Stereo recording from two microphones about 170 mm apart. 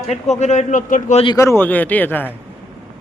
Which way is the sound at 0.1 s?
40° left (ahead or behind).